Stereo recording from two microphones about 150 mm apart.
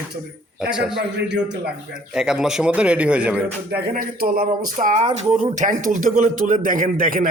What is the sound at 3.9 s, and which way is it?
Speech, 75° right (ahead or behind).